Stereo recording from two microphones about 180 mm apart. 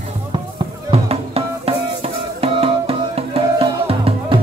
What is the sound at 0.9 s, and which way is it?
Music, 35° right (ahead or behind).